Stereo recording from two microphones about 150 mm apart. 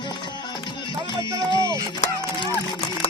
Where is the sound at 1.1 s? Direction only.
30° left (ahead or behind).